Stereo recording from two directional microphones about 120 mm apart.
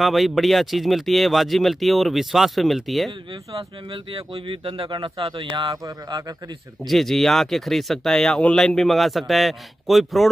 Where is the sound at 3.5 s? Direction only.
50° right (ahead or behind).